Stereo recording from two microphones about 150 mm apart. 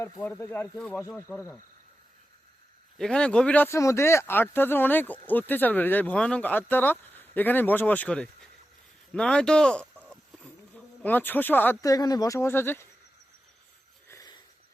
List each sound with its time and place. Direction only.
0.0 s speech: 15° left (ahead or behind)
3.0 s speech: 5° left (ahead or behind)
9.8 s livestock: 10° right (ahead or behind)
10.1 s speech: 5° left (ahead or behind)
14.1 s a sound: 25° left (ahead or behind)